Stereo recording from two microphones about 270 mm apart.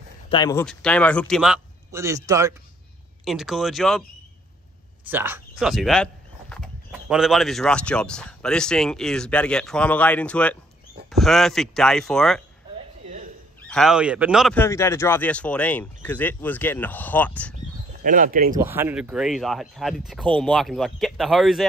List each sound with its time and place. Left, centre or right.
0.3 s speech: centre
5.1 s speech: centre
13.7 s speech: centre
18.0 s speech: right
18.6 s speech: centre